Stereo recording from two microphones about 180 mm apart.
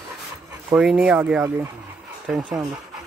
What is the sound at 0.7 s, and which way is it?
Speech, 5° right (ahead or behind).